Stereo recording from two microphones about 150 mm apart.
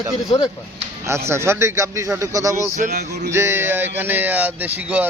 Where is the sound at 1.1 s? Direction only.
20° right (ahead or behind).